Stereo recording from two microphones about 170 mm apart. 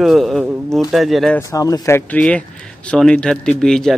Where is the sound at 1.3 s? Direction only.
20° left (ahead or behind).